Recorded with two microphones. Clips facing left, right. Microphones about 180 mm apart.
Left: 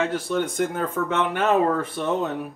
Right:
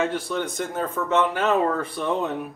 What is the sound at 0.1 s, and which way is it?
Speech, 55° left (ahead or behind).